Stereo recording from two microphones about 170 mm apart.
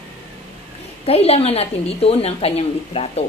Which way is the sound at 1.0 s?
35° left (ahead or behind).